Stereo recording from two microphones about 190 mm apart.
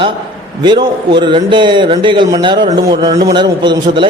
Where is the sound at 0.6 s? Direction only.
25° right (ahead or behind).